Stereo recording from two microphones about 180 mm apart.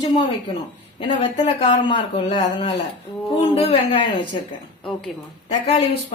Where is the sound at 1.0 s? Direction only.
30° left (ahead or behind).